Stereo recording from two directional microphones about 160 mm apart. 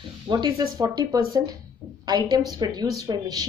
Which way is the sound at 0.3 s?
25° right (ahead or behind).